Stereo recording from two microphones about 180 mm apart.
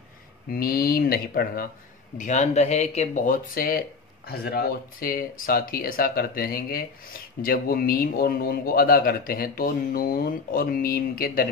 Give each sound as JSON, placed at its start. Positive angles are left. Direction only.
{"t": 0.5, "sound": "a man's voice", "side_deg": 55}
{"t": 2.1, "sound": "speech", "side_deg": 40}
{"t": 3.5, "sound": "a man's voice", "side_deg": 55}